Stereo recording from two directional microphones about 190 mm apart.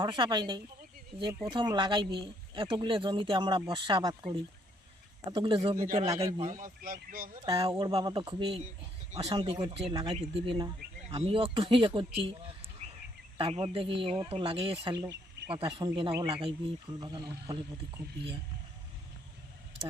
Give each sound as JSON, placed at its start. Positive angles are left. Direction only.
{"t": 0.0, "sound": "speech", "side_deg": -25}
{"t": 5.7, "sound": "a man's voice", "side_deg": -15}
{"t": 6.0, "sound": "a man's voice", "side_deg": -30}
{"t": 6.5, "sound": "speech", "side_deg": -45}
{"t": 7.4, "sound": "speech", "side_deg": -30}
{"t": 12.8, "sound": "a sound", "side_deg": -35}
{"t": 13.4, "sound": "speech", "side_deg": -30}